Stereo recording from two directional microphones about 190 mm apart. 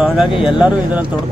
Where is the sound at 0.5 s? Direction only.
5° right (ahead or behind).